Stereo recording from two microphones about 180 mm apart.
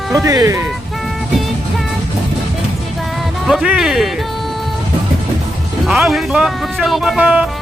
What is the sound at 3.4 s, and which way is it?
Speech, centre (ahead or behind).